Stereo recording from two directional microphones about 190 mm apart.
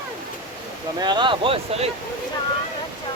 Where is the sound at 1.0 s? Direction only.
25° right (ahead or behind).